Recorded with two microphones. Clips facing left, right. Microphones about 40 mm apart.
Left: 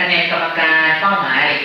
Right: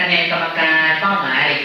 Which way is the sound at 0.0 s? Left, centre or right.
Centre.